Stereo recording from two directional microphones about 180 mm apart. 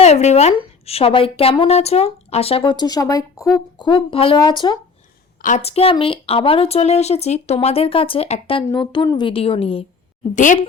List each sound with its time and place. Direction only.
0.0 s speech: 40° left (ahead or behind)
5.4 s speech: 45° left (ahead or behind)
10.3 s a woman's voice: 45° left (ahead or behind)